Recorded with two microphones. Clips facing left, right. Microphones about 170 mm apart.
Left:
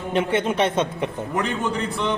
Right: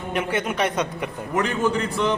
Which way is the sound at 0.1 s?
30° left (ahead or behind).